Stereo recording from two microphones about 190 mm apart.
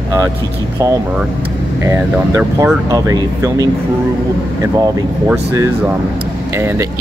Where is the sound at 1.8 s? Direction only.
15° right (ahead or behind).